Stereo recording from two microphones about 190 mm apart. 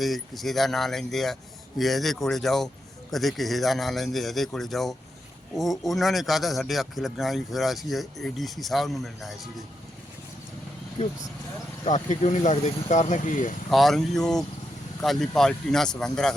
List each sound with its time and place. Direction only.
0.0 s a man's voice: centre (ahead or behind)
11.0 s speech: 35° left (ahead or behind)
13.7 s a man's voice: centre (ahead or behind)